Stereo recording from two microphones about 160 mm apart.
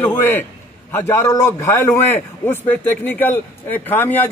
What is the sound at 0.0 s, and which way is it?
A man's voice, 15° left (ahead or behind).